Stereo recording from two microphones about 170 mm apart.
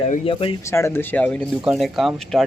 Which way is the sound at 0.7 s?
15° left (ahead or behind).